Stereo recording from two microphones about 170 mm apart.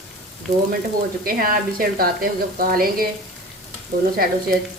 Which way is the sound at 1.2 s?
60° right (ahead or behind).